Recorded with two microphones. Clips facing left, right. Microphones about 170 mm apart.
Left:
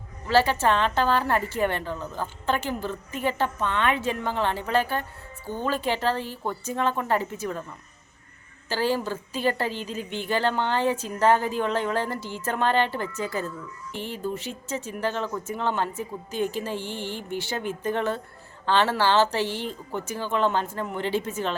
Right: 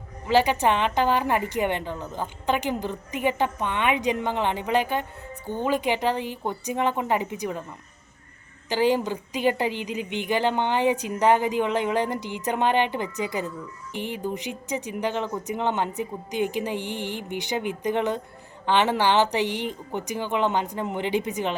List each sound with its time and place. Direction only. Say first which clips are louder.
0.3 s a woman's voice: right 1 dB; 15° right (ahead or behind)
8.7 s a woman's voice: right 3 dB; 15° right (ahead or behind)